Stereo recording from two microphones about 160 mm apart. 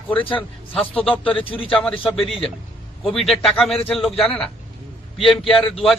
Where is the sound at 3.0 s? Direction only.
35° left (ahead or behind).